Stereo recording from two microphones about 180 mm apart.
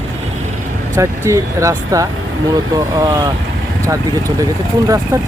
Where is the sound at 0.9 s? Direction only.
15° right (ahead or behind).